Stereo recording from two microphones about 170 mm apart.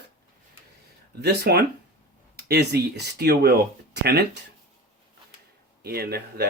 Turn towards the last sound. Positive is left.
turn(degrees=-65)  # may be behind; listen again after turning